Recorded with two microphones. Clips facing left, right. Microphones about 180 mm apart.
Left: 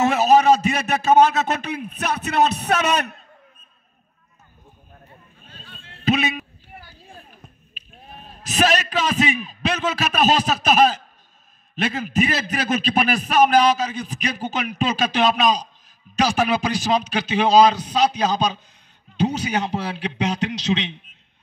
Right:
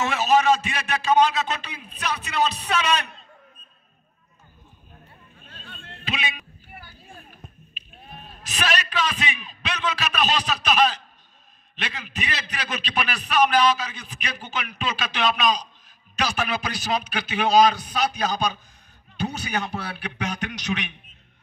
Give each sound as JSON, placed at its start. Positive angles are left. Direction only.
{"t": 0.0, "sound": "a man's voice", "side_deg": 40}
{"t": 5.5, "sound": "a sound", "side_deg": -55}
{"t": 6.0, "sound": "speech", "side_deg": 45}
{"t": 7.7, "sound": "a man's voice", "side_deg": 40}
{"t": 17.1, "sound": "a man's voice", "side_deg": 25}